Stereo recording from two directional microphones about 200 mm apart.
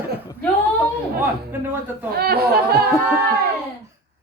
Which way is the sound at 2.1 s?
50° right (ahead or behind).